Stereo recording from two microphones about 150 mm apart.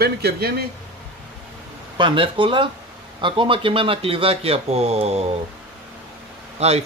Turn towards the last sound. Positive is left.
turn(degrees=-45)  # may be behind; listen again after turning